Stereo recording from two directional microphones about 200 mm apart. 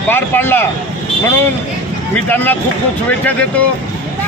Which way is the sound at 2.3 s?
10° left (ahead or behind).